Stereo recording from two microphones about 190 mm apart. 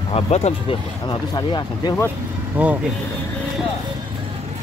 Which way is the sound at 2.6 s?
10° right (ahead or behind).